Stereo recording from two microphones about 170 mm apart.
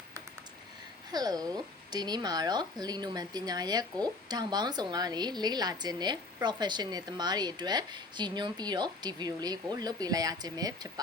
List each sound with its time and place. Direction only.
1.1 s speech: 20° right (ahead or behind)